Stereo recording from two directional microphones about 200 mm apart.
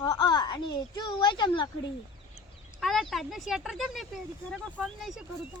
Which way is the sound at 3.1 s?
Centre (ahead or behind).